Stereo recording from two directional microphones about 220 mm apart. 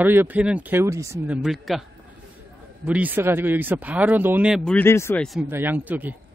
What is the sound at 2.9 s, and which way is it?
Speech, 5° right (ahead or behind).